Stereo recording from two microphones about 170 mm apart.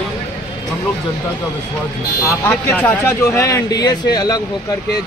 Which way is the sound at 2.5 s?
10° left (ahead or behind).